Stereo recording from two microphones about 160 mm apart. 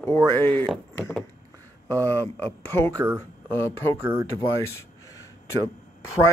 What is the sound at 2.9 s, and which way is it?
Speech, 20° right (ahead or behind).